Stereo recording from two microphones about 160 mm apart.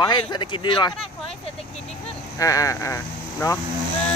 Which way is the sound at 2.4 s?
20° left (ahead or behind).